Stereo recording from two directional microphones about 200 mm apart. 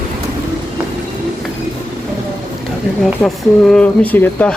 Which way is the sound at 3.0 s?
Centre (ahead or behind).